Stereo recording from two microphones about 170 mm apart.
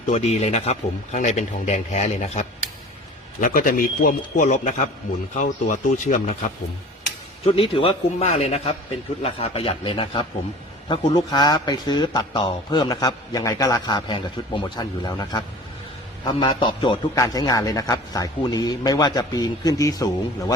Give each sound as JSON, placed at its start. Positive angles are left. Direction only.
{"t": 0.1, "sound": "a man's voice", "side_deg": 40}
{"t": 3.4, "sound": "a man's voice", "side_deg": 55}
{"t": 7.4, "sound": "a man's voice", "side_deg": 35}